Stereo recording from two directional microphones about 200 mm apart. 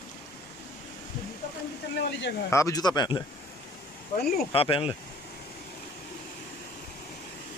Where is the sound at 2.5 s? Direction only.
15° left (ahead or behind).